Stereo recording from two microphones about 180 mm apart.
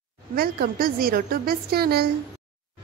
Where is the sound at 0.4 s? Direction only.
55° right (ahead or behind).